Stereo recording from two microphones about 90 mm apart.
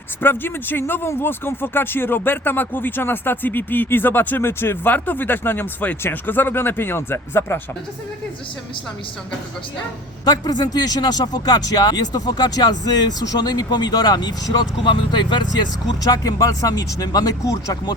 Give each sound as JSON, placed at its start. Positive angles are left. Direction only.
{"t": 0.2, "sound": "speech", "side_deg": 25}
{"t": 10.2, "sound": "speech", "side_deg": 50}